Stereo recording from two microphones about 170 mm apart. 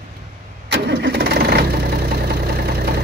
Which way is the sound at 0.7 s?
80° right.